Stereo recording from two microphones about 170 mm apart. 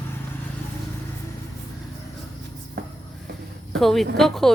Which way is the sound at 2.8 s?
70° right (ahead or behind).